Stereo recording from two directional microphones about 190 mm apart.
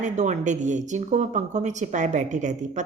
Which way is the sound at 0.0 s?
40° right (ahead or behind).